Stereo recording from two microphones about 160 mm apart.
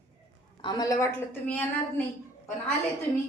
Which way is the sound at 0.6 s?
20° left (ahead or behind).